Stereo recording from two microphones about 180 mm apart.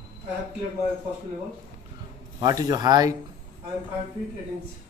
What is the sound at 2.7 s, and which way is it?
Speech, 20° right (ahead or behind).